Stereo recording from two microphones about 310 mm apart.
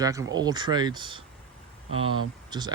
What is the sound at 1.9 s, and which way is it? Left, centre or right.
Speech, right.